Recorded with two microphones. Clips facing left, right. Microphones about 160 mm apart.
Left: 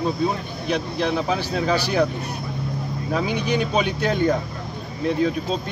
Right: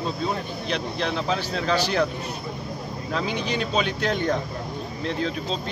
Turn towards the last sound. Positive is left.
turn(degrees=10)  # may be behind; listen again after turning